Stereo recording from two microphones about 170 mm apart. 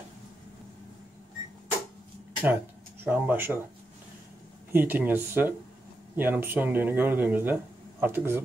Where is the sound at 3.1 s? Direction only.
10° right (ahead or behind).